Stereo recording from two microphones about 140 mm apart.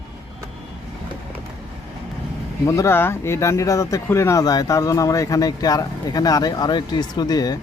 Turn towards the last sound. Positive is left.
turn(degrees=25)  # may be behind; listen again after turning